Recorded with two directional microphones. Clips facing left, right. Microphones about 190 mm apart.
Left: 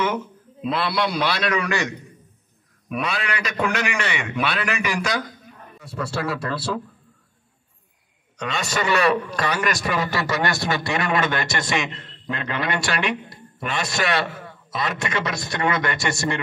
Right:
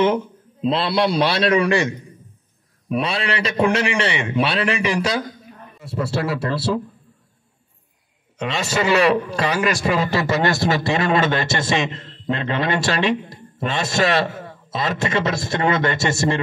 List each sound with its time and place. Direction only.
0.0 s a man's voice: 25° right (ahead or behind)
2.9 s a man's voice: 30° right (ahead or behind)
8.4 s a man's voice: 25° right (ahead or behind)